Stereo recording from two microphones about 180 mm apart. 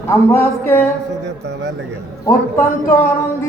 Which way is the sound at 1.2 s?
70° right (ahead or behind).